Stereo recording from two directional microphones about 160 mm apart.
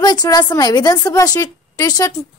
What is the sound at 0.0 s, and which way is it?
A woman's voice, 25° left (ahead or behind).